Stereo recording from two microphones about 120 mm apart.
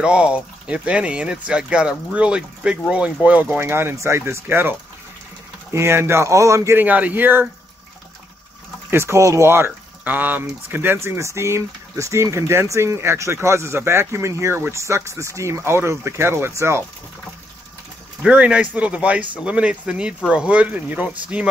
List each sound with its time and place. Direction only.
0.0 s speech: 10° right (ahead or behind)
8.9 s speech: 20° right (ahead or behind)
18.2 s speech: 10° right (ahead or behind)